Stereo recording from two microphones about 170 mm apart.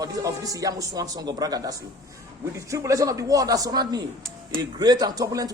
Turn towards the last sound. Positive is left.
turn(degrees=-20)  # may be behind; listen again after turning